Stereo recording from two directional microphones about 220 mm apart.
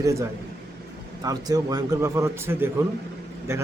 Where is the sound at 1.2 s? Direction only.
15° right (ahead or behind).